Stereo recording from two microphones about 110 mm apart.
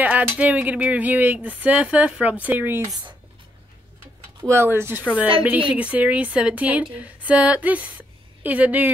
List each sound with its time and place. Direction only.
0.0 s speech: 15° right (ahead or behind)
4.5 s speech: 20° right (ahead or behind)